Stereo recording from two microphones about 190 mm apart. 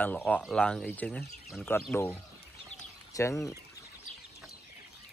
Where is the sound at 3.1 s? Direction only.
15° left (ahead or behind).